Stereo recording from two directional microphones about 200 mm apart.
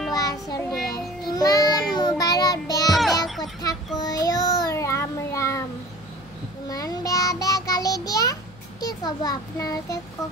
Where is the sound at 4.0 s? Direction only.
20° left (ahead or behind).